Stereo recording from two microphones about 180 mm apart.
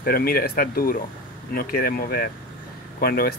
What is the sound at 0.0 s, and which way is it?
Speech, 55° left (ahead or behind).